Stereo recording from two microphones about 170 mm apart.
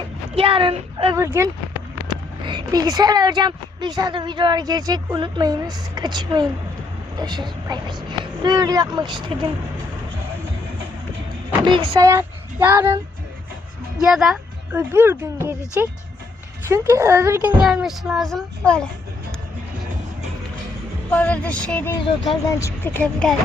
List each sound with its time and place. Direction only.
0.3 s speech: 30° right (ahead or behind)
1.4 s a woman's voice: 15° right (ahead or behind)
11.7 s speech: 20° right (ahead or behind)
14.0 s speech: centre (ahead or behind)
14.8 s speech: 15° right (ahead or behind)
17.6 s a child's voice: centre (ahead or behind)
21.1 s speech: 10° left (ahead or behind)